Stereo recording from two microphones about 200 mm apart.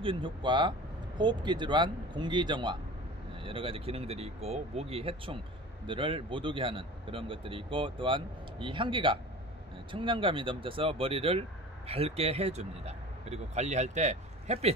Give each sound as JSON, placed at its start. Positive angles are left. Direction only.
{"t": 0.0, "sound": "a man's voice", "side_deg": -25}